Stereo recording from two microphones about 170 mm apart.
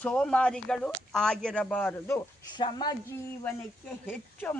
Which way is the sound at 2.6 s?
25° left (ahead or behind).